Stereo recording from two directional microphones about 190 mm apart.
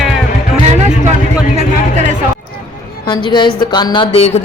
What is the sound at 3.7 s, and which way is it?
Speech, 25° left (ahead or behind).